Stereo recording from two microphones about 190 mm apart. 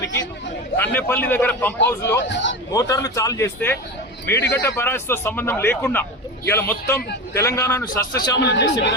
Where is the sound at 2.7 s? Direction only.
20° left (ahead or behind).